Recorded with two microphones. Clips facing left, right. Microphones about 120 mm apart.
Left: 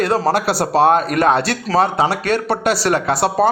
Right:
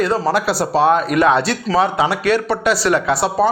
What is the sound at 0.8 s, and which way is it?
Speech, 50° left (ahead or behind).